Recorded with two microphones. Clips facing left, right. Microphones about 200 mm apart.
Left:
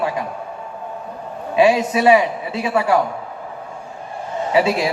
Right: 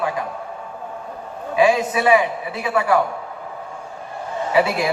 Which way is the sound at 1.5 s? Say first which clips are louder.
Left 2 dB; 25° left (ahead or behind).